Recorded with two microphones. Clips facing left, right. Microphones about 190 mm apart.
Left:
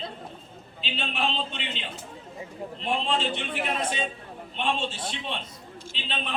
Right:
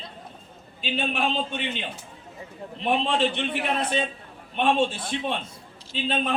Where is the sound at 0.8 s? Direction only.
50° right (ahead or behind).